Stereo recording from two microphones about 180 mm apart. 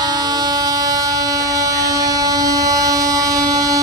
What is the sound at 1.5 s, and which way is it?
Train, 20° right (ahead or behind).